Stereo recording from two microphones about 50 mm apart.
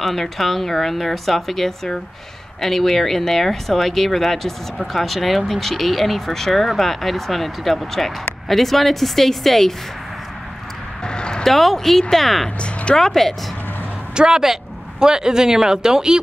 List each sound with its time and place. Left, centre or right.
0.0 s speech: centre
11.1 s a sound: centre
11.4 s speech: centre
14.1 s a man's voice: centre